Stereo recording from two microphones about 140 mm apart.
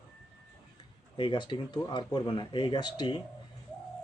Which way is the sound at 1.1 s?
35° left (ahead or behind).